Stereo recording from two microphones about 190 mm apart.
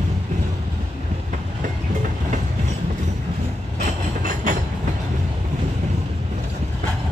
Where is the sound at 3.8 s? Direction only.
45° right (ahead or behind).